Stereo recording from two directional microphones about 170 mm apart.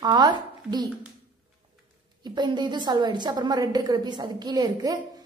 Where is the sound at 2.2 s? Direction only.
25° right (ahead or behind).